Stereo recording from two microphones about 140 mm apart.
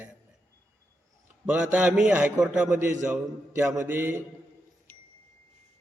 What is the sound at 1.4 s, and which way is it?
A man's voice, 10° right (ahead or behind).